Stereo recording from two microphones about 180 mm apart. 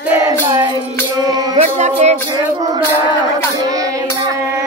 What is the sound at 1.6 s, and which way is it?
Music, 40° right (ahead or behind).